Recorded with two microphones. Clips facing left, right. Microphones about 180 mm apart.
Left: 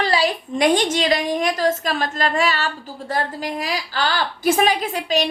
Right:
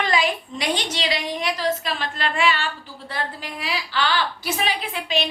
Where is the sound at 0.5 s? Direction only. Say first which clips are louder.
Left 9 dB; 50° left (ahead or behind).